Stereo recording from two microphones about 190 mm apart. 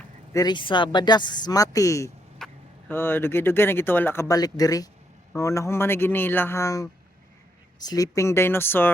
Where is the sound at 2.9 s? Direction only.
10° left (ahead or behind).